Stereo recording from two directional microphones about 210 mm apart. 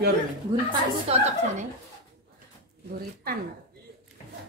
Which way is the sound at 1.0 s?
30° right (ahead or behind).